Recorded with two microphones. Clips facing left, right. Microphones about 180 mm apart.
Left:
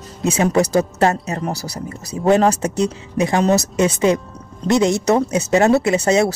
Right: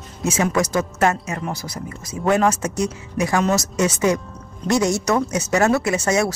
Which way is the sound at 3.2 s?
25° left (ahead or behind).